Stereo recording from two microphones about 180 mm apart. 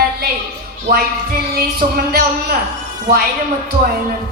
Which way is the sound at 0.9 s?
55° right (ahead or behind).